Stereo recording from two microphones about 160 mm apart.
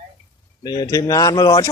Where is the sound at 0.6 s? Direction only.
25° left (ahead or behind).